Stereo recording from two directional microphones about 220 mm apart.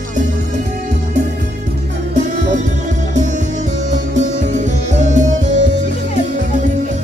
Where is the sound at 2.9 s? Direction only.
35° right (ahead or behind).